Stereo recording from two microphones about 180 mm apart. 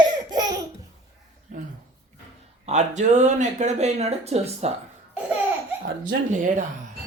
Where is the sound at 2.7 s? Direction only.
40° right (ahead or behind).